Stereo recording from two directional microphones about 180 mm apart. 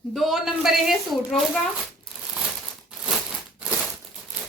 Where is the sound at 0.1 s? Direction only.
Centre (ahead or behind).